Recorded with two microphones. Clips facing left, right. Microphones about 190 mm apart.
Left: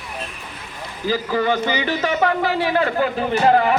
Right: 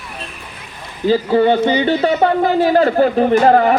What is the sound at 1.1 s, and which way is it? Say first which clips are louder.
A man's voice: right 7 dB; 30° right (ahead or behind).